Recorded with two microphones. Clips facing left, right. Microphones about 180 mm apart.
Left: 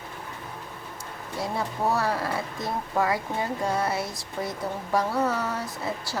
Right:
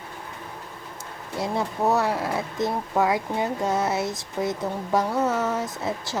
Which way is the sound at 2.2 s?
20° right (ahead or behind).